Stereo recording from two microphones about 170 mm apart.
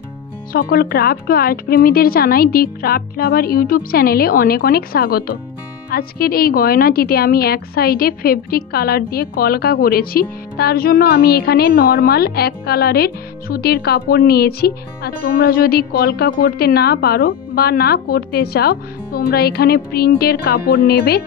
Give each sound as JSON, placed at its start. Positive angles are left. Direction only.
{"t": 0.5, "sound": "speech", "side_deg": 60}